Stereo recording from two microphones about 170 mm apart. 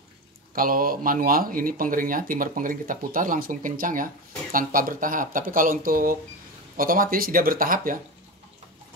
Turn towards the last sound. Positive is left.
turn(degrees=-55)  # may be behind; listen again after turning